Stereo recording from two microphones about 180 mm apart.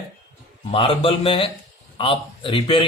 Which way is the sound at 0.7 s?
30° left (ahead or behind).